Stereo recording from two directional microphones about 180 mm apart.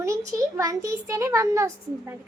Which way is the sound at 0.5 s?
20° right (ahead or behind).